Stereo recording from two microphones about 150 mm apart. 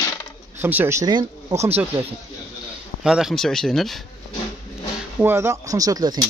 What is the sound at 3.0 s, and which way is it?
Speech, 5° right (ahead or behind).